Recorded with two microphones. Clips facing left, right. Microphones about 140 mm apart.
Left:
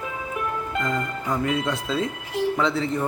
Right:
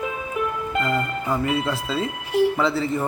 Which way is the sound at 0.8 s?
5° right (ahead or behind).